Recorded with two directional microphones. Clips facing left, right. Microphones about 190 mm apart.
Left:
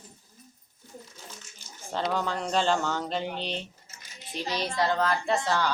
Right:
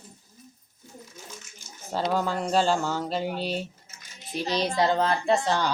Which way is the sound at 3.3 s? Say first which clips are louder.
Right 4 dB; 5° right (ahead or behind).